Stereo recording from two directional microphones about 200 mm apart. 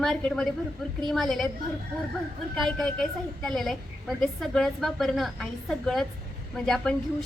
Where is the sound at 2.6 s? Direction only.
Centre (ahead or behind).